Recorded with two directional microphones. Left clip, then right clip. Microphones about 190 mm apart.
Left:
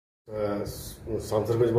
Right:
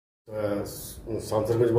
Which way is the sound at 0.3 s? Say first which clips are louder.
Right 1 dB; 10° right (ahead or behind).